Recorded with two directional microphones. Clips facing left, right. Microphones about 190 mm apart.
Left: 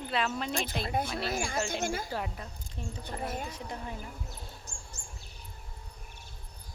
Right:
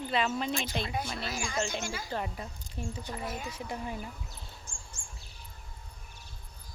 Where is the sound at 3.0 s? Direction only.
55° left (ahead or behind).